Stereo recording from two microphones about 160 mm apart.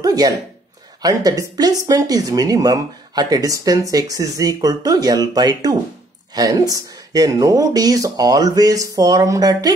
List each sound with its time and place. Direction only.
0.0 s speech: 25° right (ahead or behind)